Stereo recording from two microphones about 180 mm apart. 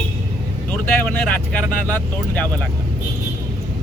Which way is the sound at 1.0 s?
10° left (ahead or behind).